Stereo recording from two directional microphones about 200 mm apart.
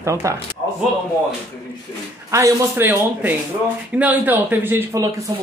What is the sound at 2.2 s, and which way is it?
Speech, 15° right (ahead or behind).